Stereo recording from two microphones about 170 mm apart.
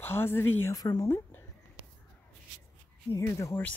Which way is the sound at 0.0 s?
15° left (ahead or behind).